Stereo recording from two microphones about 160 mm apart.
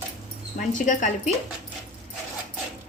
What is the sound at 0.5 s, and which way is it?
Speech, 50° left (ahead or behind).